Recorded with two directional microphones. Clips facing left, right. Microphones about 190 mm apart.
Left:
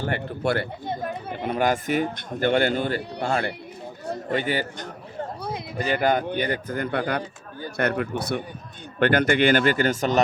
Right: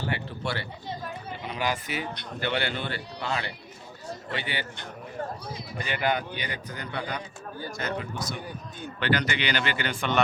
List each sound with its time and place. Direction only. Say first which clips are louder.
0.0 s speech: left 6 dB; 50° left (ahead or behind)
5.4 s a sound: left 7 dB; 60° left (ahead or behind)
5.7 s speech: left 6 dB; 40° left (ahead or behind)